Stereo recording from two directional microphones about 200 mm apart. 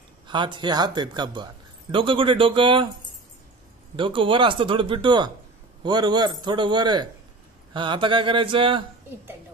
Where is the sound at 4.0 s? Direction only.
25° right (ahead or behind).